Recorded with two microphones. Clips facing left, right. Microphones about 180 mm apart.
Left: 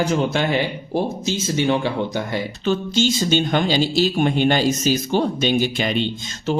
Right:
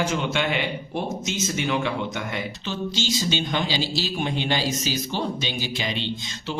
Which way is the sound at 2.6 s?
50° left (ahead or behind).